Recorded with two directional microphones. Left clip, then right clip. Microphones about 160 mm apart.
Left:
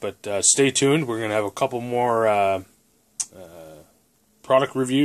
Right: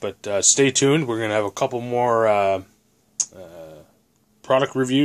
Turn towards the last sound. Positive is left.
turn(degrees=0)  # may be behind; listen again after turning